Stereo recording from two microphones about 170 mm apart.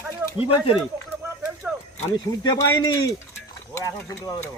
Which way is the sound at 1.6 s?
5° right (ahead or behind).